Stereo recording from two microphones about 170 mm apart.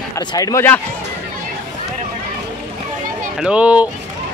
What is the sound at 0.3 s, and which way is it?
Speech, 20° left (ahead or behind).